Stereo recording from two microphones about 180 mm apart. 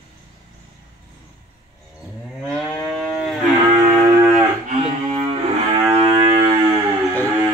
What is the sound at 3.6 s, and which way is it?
Music, 20° right (ahead or behind).